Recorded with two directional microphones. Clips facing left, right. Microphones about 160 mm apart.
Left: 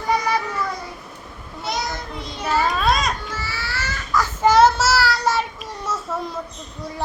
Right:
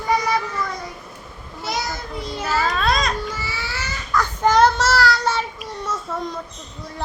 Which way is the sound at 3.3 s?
15° right (ahead or behind).